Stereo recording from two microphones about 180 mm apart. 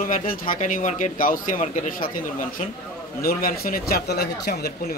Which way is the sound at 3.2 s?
55° left (ahead or behind).